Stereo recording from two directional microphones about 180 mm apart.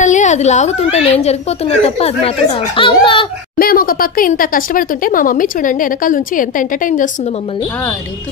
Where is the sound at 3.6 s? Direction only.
55° left (ahead or behind); by 7.6 s 35° left (ahead or behind).